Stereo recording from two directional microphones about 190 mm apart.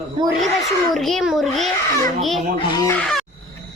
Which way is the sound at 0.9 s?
Centre (ahead or behind).